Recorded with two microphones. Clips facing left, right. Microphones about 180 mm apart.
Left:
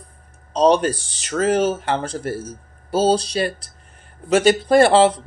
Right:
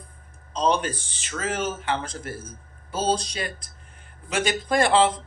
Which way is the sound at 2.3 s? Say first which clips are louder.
Left 9 dB; 75° left (ahead or behind).